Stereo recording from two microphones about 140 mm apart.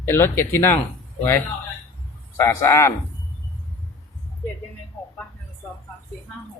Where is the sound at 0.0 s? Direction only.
15° left (ahead or behind).